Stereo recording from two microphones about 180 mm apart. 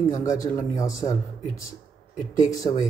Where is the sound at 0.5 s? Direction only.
20° left (ahead or behind).